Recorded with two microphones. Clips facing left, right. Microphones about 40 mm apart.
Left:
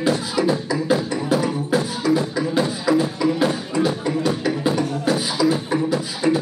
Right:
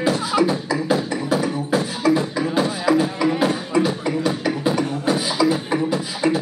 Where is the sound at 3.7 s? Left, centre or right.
Right.